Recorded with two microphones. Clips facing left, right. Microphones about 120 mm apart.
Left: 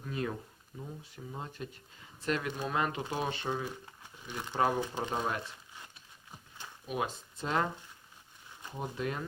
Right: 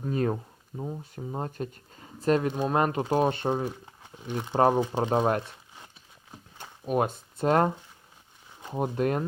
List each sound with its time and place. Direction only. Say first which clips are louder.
0.0 s speech: right 9 dB; 40° right (ahead or behind)
6.6 s speech: right 9 dB; 45° right (ahead or behind)
8.7 s speech: right 10 dB; 50° right (ahead or behind)